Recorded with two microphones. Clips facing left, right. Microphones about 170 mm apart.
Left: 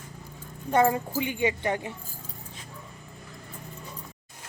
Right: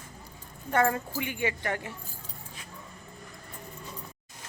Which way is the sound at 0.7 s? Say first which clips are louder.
Left 3 dB; 15° left (ahead or behind).